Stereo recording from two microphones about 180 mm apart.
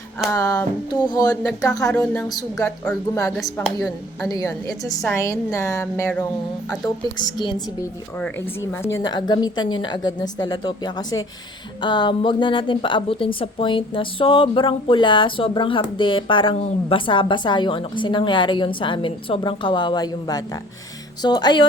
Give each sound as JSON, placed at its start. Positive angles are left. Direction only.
{"t": 0.3, "sound": "a woman's voice", "side_deg": 20}
{"t": 2.6, "sound": "a woman's voice", "side_deg": 10}
{"t": 6.7, "sound": "a woman's voice", "side_deg": 20}
{"t": 9.0, "sound": "a woman's voice", "side_deg": 25}